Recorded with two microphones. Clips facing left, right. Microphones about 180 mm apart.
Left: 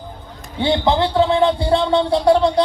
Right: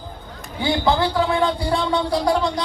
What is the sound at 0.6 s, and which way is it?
Speech, 25° left (ahead or behind).